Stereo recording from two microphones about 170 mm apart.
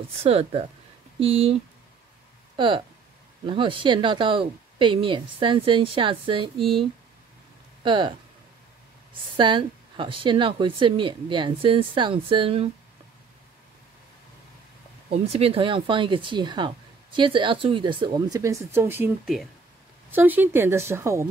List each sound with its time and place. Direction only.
0.2 s speech: 35° right (ahead or behind)
9.4 s speech: 30° right (ahead or behind)
15.0 s speech: 35° right (ahead or behind); by 21.3 s 15° right (ahead or behind)